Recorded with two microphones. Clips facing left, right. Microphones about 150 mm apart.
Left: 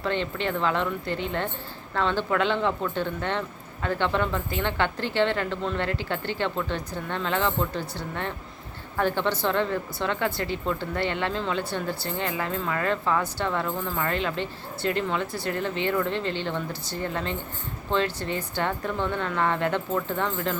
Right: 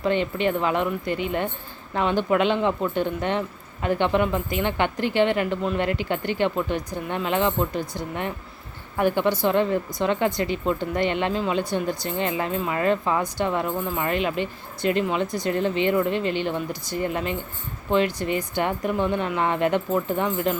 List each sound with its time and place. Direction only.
0.0 s speech: 15° right (ahead or behind)